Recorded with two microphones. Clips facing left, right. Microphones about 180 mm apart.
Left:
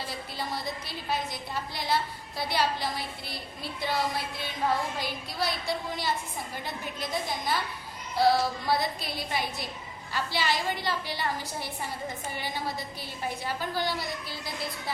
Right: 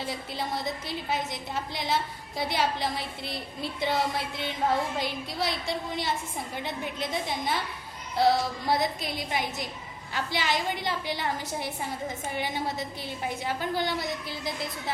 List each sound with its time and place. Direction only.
0.0 s a woman's voice: 20° right (ahead or behind)